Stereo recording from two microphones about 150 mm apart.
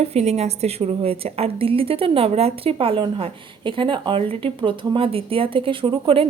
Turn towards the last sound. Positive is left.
turn(degrees=-35)  # may be behind; listen again after turning